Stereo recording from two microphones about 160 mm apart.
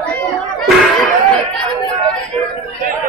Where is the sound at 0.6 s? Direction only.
Centre (ahead or behind).